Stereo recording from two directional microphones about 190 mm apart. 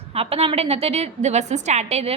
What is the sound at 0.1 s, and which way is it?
A woman's voice, 30° right (ahead or behind).